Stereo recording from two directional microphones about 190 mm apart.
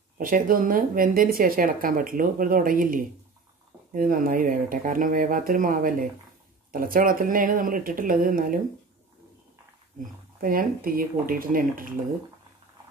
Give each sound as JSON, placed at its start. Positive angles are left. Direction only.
{"t": 0.2, "sound": "speech", "side_deg": -45}
{"t": 10.4, "sound": "speech", "side_deg": -50}